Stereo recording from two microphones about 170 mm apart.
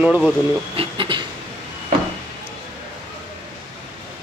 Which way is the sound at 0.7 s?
30° right (ahead or behind).